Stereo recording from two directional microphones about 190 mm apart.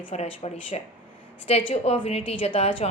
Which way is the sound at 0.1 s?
35° left (ahead or behind).